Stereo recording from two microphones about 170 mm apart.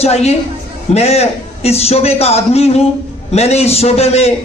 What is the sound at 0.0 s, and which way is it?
A man's voice, 35° left (ahead or behind).